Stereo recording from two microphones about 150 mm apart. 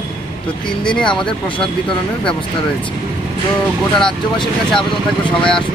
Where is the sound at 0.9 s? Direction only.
5° left (ahead or behind).